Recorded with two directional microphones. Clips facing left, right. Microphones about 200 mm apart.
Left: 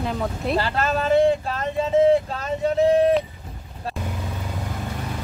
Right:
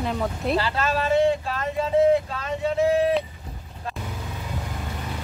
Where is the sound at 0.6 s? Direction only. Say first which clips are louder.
Left 2 dB; 45° left (ahead or behind).